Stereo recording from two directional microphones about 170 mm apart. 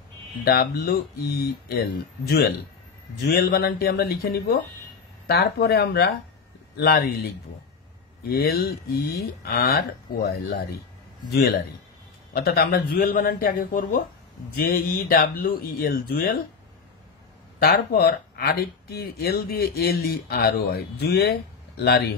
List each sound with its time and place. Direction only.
0.5 s speech: 65° left (ahead or behind)
3.2 s speech: 65° left (ahead or behind)
8.3 s speech: 65° left (ahead or behind)
12.4 s speech: 65° left (ahead or behind)
17.6 s speech: 60° left (ahead or behind)